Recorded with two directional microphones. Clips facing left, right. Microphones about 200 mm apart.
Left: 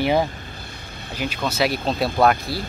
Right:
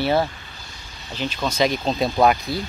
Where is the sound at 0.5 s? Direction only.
55° left (ahead or behind).